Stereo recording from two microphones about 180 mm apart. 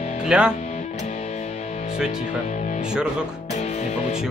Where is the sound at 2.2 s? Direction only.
40° left (ahead or behind).